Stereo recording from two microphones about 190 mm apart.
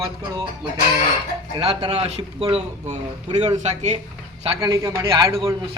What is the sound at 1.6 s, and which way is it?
Speech, 30° right (ahead or behind).